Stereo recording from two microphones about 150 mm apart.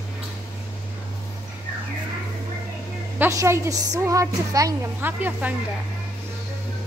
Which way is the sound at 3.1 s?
15° right (ahead or behind).